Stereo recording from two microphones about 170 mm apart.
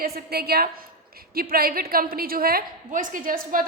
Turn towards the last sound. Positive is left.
turn(degrees=-55)  # may be behind; listen again after turning